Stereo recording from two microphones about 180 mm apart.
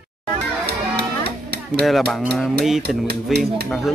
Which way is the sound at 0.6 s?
65° right (ahead or behind).